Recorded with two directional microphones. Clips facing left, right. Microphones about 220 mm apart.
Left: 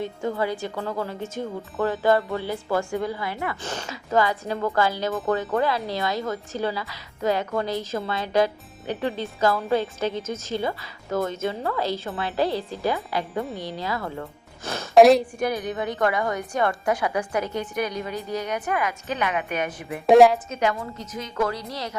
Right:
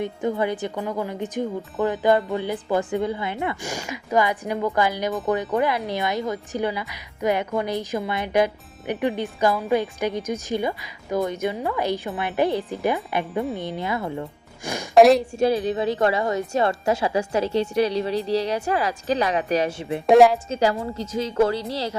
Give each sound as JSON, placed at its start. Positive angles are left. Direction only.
{"t": 0.0, "sound": "a woman's voice", "side_deg": -20}
{"t": 13.4, "sound": "a woman's voice", "side_deg": 0}
{"t": 13.7, "sound": "speech", "side_deg": -20}
{"t": 14.9, "sound": "a woman's voice", "side_deg": 0}
{"t": 15.4, "sound": "a woman's voice", "side_deg": -30}
{"t": 20.1, "sound": "a woman's voice", "side_deg": 0}
{"t": 20.5, "sound": "a woman's voice", "side_deg": -30}